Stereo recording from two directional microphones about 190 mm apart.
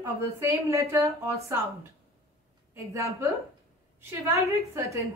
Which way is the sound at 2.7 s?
15° right (ahead or behind).